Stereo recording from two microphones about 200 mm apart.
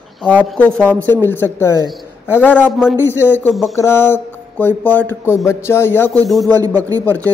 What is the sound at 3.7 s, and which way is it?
Speech, 10° left (ahead or behind).